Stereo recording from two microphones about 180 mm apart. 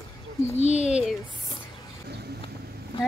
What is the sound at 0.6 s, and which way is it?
Speech, 40° left (ahead or behind).